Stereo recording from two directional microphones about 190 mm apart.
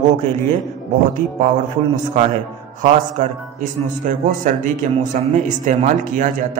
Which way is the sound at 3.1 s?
40° right (ahead or behind).